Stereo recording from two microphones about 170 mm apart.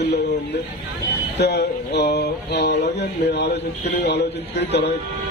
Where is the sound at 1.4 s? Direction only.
75° left (ahead or behind).